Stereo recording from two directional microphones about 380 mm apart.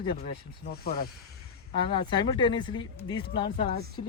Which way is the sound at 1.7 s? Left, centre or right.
Centre.